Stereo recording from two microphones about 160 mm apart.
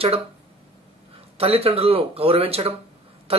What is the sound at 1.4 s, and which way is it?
Speech, 40° right (ahead or behind).